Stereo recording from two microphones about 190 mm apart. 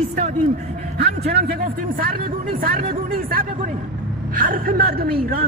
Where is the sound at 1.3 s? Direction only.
55° right (ahead or behind).